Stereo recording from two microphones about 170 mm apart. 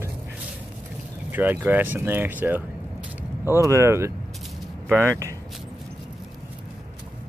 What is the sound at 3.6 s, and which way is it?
Speech, 15° right (ahead or behind).